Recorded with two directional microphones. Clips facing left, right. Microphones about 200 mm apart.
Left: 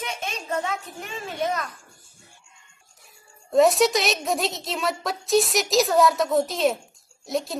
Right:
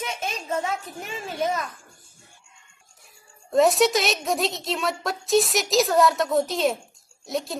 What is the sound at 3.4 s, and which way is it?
A woman's voice, centre (ahead or behind).